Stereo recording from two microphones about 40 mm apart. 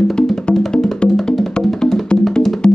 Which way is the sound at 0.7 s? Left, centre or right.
Centre.